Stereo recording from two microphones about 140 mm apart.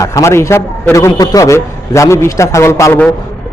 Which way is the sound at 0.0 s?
20° left (ahead or behind).